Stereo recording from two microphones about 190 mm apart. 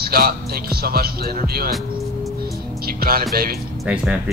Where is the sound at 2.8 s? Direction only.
50° right (ahead or behind).